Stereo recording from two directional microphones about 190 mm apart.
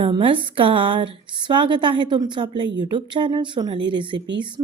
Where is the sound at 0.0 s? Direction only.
25° right (ahead or behind).